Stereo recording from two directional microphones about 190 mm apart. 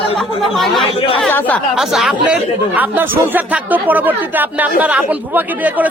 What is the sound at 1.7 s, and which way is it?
A woman's voice, centre (ahead or behind).